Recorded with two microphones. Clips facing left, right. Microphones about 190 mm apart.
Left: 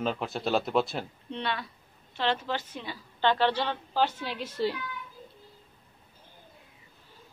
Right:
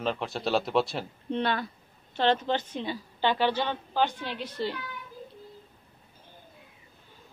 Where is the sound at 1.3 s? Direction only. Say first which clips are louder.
Right 5 dB; 50° right (ahead or behind).